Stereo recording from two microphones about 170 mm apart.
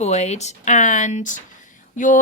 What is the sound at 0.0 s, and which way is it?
A woman's voice, 40° left (ahead or behind).